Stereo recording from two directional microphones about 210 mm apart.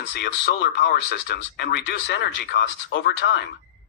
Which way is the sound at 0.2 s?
55° left (ahead or behind).